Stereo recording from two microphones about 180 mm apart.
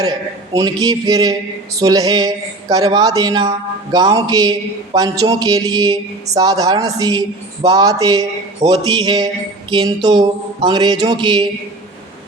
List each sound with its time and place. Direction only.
0.0 s a woman's voice: 20° right (ahead or behind)